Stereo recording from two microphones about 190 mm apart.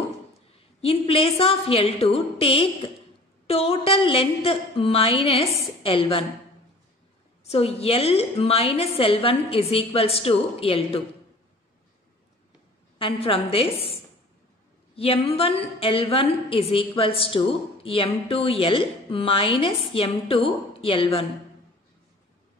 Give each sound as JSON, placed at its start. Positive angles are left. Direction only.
{"t": 0.7, "sound": "a woman's voice", "side_deg": 30}
{"t": 7.4, "sound": "a woman's voice", "side_deg": 30}
{"t": 13.0, "sound": "a woman's voice", "side_deg": 30}
{"t": 15.0, "sound": "a woman's voice", "side_deg": 30}